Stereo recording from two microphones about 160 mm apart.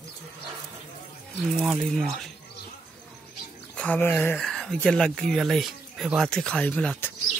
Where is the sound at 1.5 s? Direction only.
Centre (ahead or behind).